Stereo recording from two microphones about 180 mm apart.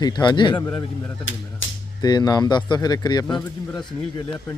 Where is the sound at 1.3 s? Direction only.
90° left.